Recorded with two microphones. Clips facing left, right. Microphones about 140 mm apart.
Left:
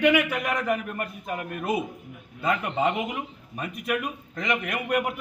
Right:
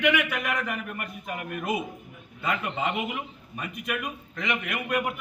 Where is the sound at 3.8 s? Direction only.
35° left (ahead or behind).